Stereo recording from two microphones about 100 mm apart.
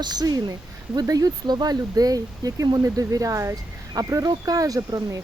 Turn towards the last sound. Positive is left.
turn(degrees=-35)  # may be behind; listen again after turning